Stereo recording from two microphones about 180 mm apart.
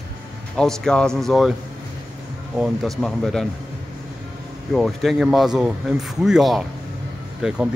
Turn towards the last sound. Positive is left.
turn(degrees=0)  # may be behind; listen again after turning